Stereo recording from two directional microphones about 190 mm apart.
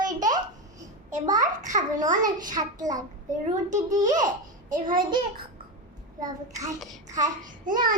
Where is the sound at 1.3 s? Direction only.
40° right (ahead or behind).